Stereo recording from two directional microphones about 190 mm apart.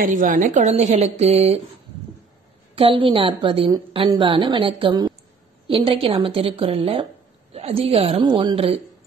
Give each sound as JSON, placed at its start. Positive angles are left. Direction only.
{"t": 0.0, "sound": "speech", "side_deg": -45}
{"t": 2.7, "sound": "a woman's voice", "side_deg": -30}